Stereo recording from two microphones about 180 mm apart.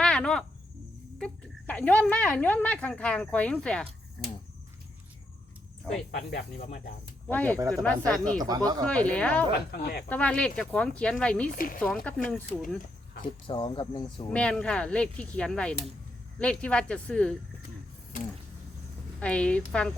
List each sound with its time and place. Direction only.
0.0 s cricket: 5° left (ahead or behind)
1.2 s speech: 5° left (ahead or behind)
6.1 s speech: 45° left (ahead or behind)
7.3 s speech: 10° left (ahead or behind)
8.4 s speech: 20° right (ahead or behind)
8.8 s speech: 5° left (ahead or behind)
9.7 s speech: 65° left (ahead or behind)
10.1 s speech: 5° left (ahead or behind)
11.5 s speech: 50° left (ahead or behind)
11.8 s speech: 5° left (ahead or behind)
13.5 s speech: 25° left (ahead or behind)
14.3 s speech: 5° left (ahead or behind)
19.2 s speech: 5° left (ahead or behind)